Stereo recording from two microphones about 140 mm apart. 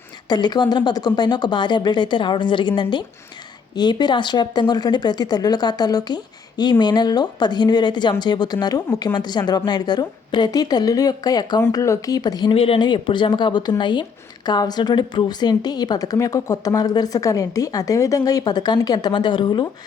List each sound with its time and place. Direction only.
0.3 s a woman's voice: 30° left (ahead or behind)